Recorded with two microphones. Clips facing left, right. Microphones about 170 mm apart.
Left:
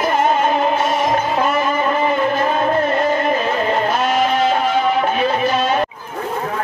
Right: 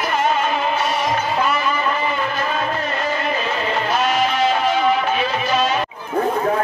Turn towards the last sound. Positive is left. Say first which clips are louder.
# left 2 dB
turn(degrees=50)  # may be behind; listen again after turning